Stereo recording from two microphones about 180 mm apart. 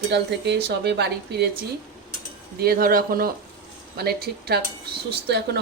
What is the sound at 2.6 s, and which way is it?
Speech, 55° right (ahead or behind).